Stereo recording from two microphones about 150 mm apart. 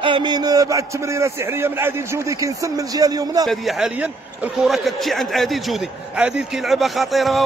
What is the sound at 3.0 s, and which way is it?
Speech, 25° right (ahead or behind).